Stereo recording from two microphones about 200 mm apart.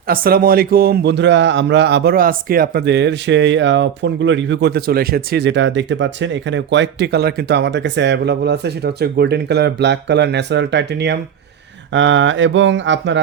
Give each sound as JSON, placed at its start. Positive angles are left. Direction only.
{"t": 0.1, "sound": "speech", "side_deg": -45}
{"t": 11.9, "sound": "mantra", "side_deg": -70}